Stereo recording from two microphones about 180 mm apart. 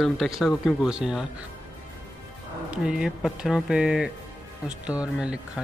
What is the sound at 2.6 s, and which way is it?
Speech, 5° right (ahead or behind).